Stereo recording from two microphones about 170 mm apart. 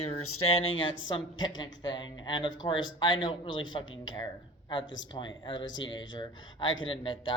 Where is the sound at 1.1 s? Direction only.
25° left (ahead or behind).